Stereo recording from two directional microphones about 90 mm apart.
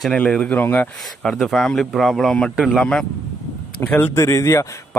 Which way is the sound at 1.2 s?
5° left (ahead or behind).